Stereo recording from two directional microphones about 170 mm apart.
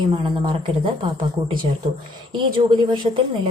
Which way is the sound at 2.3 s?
25° right (ahead or behind).